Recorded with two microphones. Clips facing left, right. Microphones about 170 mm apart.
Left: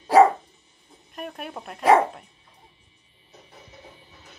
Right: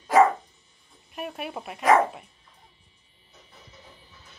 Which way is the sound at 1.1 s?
5° right (ahead or behind).